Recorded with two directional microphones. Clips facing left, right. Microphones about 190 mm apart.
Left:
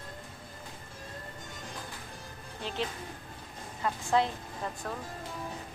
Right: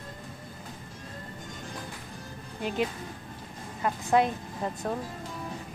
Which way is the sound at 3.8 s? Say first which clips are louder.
Right 4 dB; 15° right (ahead or behind).